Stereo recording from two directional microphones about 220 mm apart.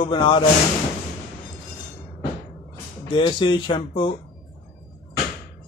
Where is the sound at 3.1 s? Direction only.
20° left (ahead or behind).